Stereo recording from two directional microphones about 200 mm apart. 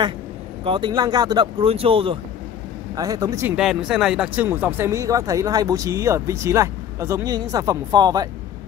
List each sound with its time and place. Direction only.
0.7 s speech: 25° right (ahead or behind)
3.5 s speech: 5° right (ahead or behind); by 8.3 s 20° right (ahead or behind)